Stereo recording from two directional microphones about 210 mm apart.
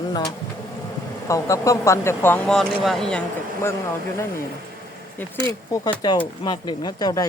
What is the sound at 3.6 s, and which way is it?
Speech, 10° left (ahead or behind).